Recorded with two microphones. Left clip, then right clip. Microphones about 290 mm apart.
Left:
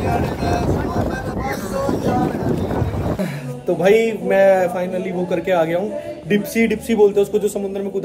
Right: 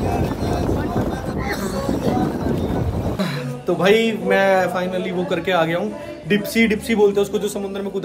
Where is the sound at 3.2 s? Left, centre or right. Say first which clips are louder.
Right 1 dB; centre.